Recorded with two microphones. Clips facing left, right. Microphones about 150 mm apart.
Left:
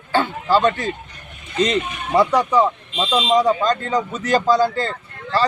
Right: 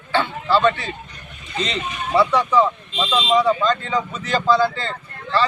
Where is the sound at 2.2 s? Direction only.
40° left (ahead or behind).